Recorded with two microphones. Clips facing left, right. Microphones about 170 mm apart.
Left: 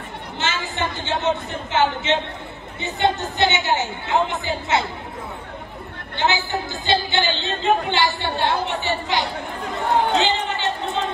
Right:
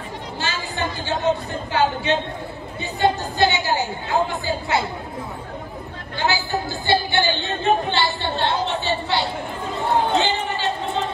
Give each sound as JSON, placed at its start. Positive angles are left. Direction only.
{"t": 0.4, "sound": "a woman's voice", "side_deg": 20}
{"t": 6.1, "sound": "a woman's voice", "side_deg": 20}
{"t": 9.8, "sound": "chatter", "side_deg": 20}